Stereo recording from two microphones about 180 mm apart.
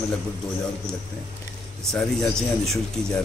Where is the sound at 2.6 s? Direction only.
Centre (ahead or behind).